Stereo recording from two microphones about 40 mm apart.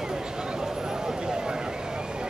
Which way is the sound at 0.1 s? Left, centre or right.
Centre.